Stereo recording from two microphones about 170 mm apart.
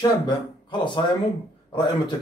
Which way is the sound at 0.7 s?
25° left (ahead or behind).